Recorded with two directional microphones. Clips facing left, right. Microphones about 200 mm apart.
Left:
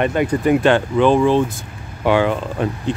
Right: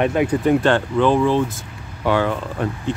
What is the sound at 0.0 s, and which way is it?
Speech, centre (ahead or behind).